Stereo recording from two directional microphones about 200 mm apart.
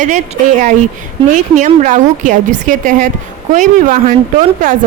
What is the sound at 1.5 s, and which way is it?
A man's voice, 40° right (ahead or behind).